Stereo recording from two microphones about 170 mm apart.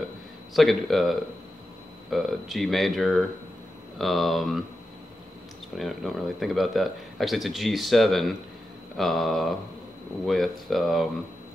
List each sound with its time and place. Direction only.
0.6 s speech: centre (ahead or behind)
5.8 s speech: centre (ahead or behind)